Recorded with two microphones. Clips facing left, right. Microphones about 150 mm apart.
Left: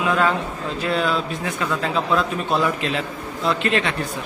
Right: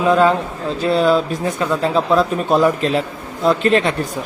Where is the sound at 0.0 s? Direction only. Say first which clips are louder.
Right 6 dB; 35° right (ahead or behind).